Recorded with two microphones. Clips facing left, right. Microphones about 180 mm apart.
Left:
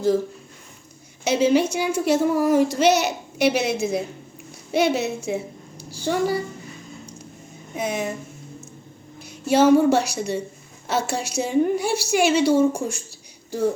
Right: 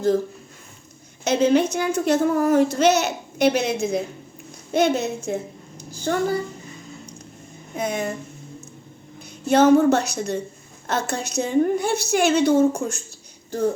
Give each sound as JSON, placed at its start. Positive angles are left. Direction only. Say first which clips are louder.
{"t": 1.2, "sound": "a child's voice", "louder": "even", "side_deg": 10}
{"t": 7.7, "sound": "speech", "louder": "even", "side_deg": 5}
{"t": 9.5, "sound": "a child's voice", "louder": "right 1 dB", "side_deg": 10}